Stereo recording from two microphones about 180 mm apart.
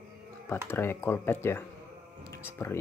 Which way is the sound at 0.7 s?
10° left (ahead or behind).